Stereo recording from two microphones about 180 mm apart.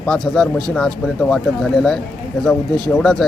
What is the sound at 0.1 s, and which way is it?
Speech, 5° left (ahead or behind).